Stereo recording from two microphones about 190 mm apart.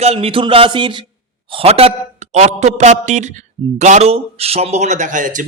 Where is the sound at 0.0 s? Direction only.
30° right (ahead or behind).